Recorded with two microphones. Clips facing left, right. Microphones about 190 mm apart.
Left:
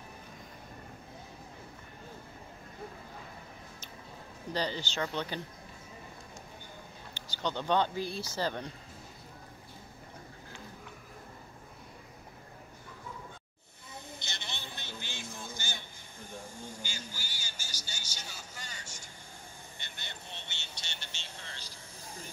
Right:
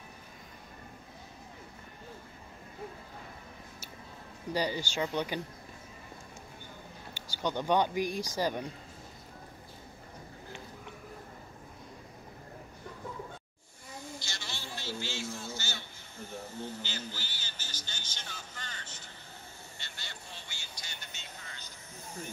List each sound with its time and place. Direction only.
4.5 s speech: 10° right (ahead or behind)
7.2 s speech: 10° right (ahead or behind)
14.0 s a sound: 20° left (ahead or behind)